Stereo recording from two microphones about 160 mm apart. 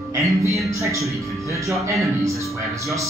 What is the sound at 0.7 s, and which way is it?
Speech, 20° right (ahead or behind).